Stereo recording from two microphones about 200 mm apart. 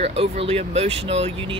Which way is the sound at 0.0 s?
30° right (ahead or behind).